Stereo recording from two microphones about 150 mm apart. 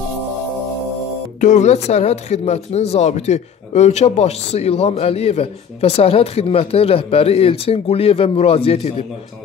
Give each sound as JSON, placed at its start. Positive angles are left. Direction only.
{"t": 1.4, "sound": "speech", "side_deg": 50}